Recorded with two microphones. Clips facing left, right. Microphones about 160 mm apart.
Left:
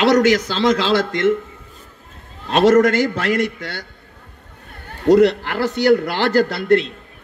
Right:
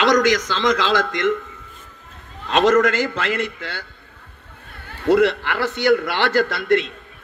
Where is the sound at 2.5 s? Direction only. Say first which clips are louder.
Left 3 dB; 40° left (ahead or behind).